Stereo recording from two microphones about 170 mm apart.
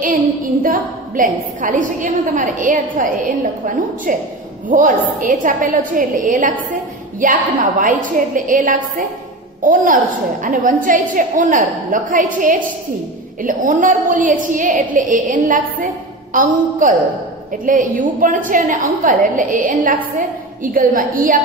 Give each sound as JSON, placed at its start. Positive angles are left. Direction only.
{"t": 0.0, "sound": "a woman's voice", "side_deg": -55}